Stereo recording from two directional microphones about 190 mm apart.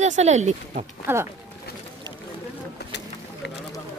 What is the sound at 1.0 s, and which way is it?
Speech, 15° right (ahead or behind).